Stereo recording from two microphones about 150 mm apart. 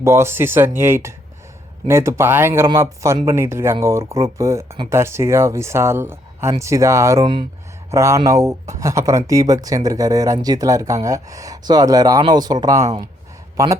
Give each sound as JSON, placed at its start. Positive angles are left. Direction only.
{"t": 0.0, "sound": "speech", "side_deg": -15}